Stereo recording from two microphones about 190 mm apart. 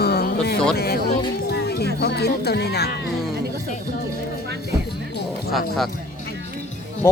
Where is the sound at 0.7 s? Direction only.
55° left (ahead or behind).